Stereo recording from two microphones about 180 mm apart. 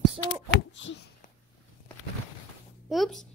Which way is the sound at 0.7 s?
90° left.